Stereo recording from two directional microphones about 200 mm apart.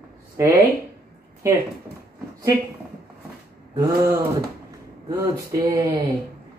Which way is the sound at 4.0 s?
15° right (ahead or behind).